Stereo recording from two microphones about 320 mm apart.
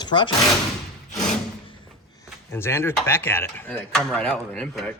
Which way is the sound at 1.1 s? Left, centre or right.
Left.